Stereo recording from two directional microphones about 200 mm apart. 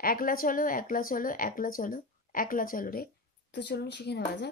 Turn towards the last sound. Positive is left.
turn(degrees=55)  # may be behind; listen again after turning